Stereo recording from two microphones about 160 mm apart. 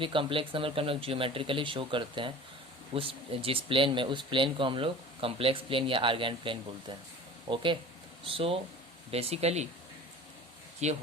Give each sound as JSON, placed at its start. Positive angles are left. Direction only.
{"t": 0.0, "sound": "speech", "side_deg": -30}
{"t": 10.8, "sound": "speech", "side_deg": -45}